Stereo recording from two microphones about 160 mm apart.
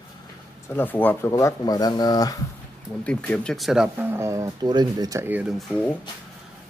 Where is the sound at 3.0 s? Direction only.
5° left (ahead or behind); by 5.5 s 10° right (ahead or behind).